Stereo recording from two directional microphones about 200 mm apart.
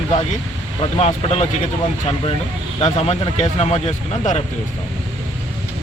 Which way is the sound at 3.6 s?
30° left (ahead or behind).